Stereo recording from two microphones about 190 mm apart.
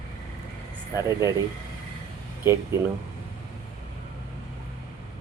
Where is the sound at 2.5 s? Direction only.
15° right (ahead or behind).